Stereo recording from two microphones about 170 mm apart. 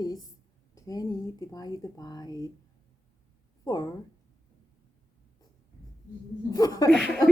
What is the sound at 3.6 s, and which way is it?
Speech, 20° left (ahead or behind).